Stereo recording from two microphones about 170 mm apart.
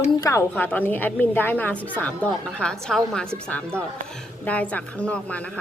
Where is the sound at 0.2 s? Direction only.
20° left (ahead or behind).